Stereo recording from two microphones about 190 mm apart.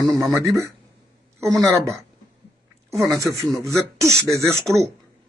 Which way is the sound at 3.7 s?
15° right (ahead or behind).